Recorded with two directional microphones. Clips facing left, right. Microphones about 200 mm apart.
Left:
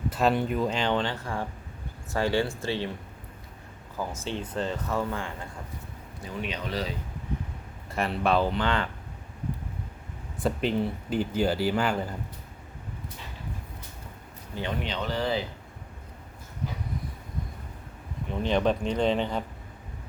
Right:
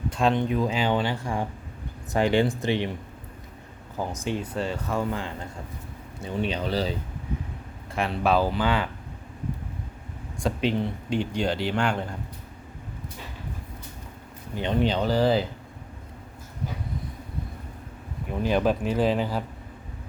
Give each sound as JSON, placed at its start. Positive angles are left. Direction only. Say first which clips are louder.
{"t": 0.1, "sound": "speech", "louder": "right 2 dB", "side_deg": 5}
{"t": 3.9, "sound": "speech", "louder": "right 3 dB", "side_deg": -15}
{"t": 6.1, "sound": "speech", "louder": "right 6 dB", "side_deg": -30}
{"t": 7.9, "sound": "speech", "louder": "right 2 dB", "side_deg": 0}
{"t": 10.4, "sound": "speech", "louder": "right 1 dB", "side_deg": 0}
{"t": 14.5, "sound": "speech", "louder": "right 4 dB", "side_deg": -20}
{"t": 14.8, "sound": "speech", "louder": "right 10 dB", "side_deg": -35}
{"t": 18.3, "sound": "speech", "louder": "right 2 dB", "side_deg": -5}